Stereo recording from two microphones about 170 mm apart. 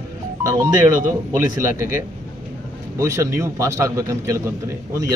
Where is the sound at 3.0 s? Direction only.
15° right (ahead or behind).